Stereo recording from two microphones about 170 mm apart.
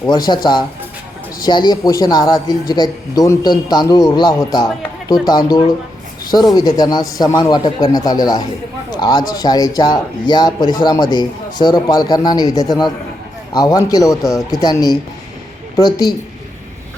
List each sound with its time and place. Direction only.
0.3 s a man's voice: 25° left (ahead or behind)
6.3 s a man's voice: 20° left (ahead or behind)